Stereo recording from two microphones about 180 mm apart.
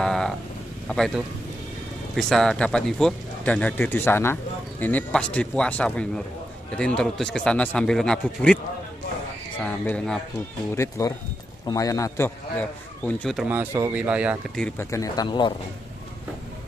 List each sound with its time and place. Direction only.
0.0 s a sound: 5° left (ahead or behind)
0.8 s speech: centre (ahead or behind)
9.6 s speech: 5° left (ahead or behind)
10.8 s speech: 20° left (ahead or behind); by 13.5 s centre (ahead or behind)
13.5 s speech: 10° right (ahead or behind)
14.5 s speech: 5° left (ahead or behind)
14.9 s speech: 20° left (ahead or behind)